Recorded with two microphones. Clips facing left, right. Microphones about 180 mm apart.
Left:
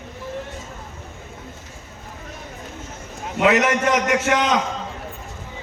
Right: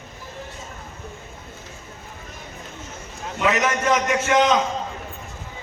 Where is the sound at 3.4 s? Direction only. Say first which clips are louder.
Left 4 dB; 70° left (ahead or behind).